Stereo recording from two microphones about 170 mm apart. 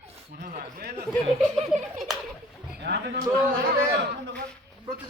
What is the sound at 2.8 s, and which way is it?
A man's voice, 80° right.